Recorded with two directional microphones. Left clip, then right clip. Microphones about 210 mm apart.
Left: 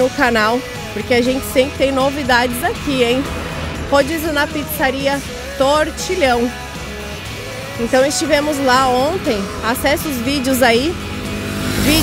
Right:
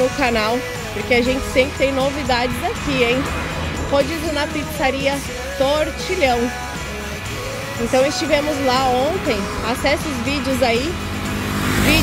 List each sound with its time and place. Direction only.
0.0 s speech: 25° left (ahead or behind)
7.9 s speech: 25° left (ahead or behind)